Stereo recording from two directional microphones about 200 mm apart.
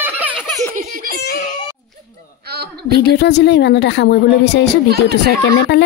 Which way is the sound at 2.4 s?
55° right (ahead or behind).